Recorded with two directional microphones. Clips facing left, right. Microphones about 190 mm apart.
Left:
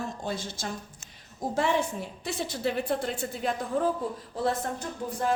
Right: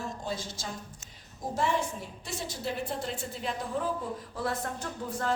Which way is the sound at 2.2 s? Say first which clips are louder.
Left 6 dB; 65° left (ahead or behind).